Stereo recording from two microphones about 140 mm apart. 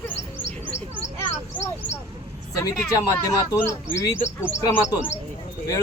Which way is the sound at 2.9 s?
25° left (ahead or behind).